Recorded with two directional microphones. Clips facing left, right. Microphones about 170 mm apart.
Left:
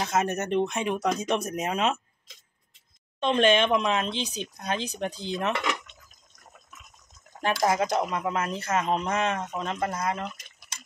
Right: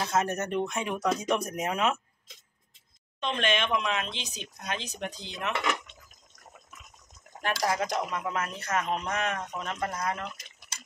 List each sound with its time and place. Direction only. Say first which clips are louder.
0.0 s speech: left 2 dB; 20° left (ahead or behind)
3.2 s speech: left 7 dB; 35° left (ahead or behind)
7.6 s speech: left 5 dB; 25° left (ahead or behind)